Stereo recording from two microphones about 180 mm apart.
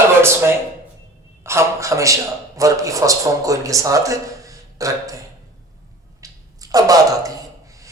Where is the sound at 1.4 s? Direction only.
15° right (ahead or behind).